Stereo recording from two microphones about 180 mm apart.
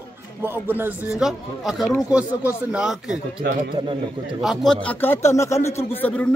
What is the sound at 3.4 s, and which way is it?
Speech, 50° right (ahead or behind).